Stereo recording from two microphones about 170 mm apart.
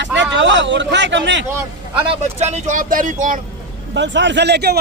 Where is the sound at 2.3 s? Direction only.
40° right (ahead or behind).